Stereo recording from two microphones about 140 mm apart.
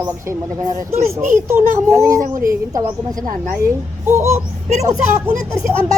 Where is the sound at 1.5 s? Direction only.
20° right (ahead or behind).